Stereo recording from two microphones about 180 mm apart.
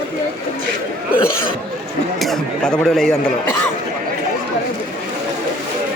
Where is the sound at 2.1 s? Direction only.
Centre (ahead or behind).